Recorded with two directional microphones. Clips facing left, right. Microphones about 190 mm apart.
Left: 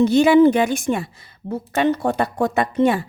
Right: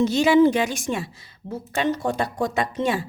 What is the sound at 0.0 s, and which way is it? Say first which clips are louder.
Speech: left 4 dB; 55° left (ahead or behind).